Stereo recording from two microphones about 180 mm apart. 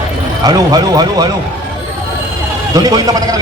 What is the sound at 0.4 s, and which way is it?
Speech, 20° right (ahead or behind).